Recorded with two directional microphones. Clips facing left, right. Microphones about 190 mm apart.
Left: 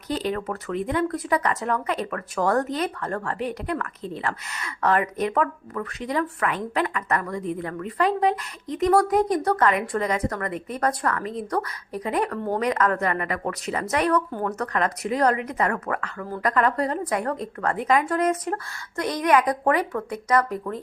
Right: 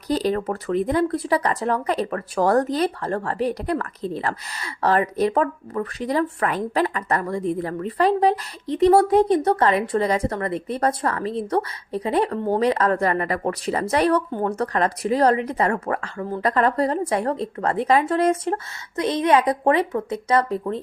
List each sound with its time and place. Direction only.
0.1 s speech: 35° right (ahead or behind)